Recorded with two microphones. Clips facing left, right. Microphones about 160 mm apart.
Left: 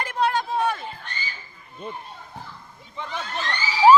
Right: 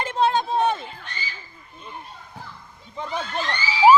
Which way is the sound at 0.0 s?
25° right (ahead or behind).